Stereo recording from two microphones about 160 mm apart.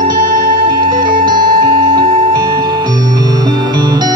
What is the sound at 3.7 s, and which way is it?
Music, 25° right (ahead or behind).